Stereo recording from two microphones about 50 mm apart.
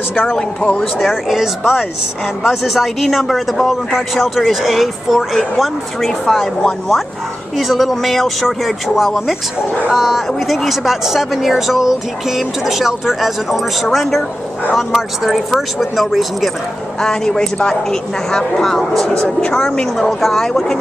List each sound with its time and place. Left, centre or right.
0.4 s speech: centre
0.9 s speech: centre
7.5 s speech: centre
17.0 s speech: centre
19.0 s speech: centre